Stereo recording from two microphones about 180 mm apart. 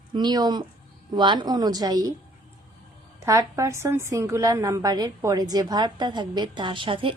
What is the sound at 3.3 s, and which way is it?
A woman's voice, 15° right (ahead or behind).